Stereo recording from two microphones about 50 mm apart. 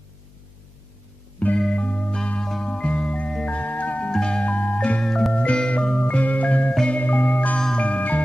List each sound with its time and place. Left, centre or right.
1.7 s music: left
4.1 s music: centre
5.0 s music: centre
5.3 s music: left